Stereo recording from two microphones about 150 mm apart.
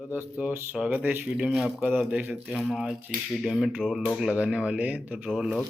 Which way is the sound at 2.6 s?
5° left (ahead or behind).